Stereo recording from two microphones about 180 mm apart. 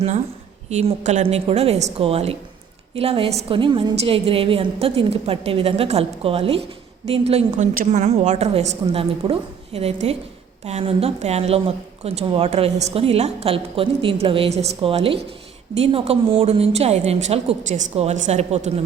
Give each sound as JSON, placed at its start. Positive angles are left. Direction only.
{"t": 0.7, "sound": "a woman's voice", "side_deg": -40}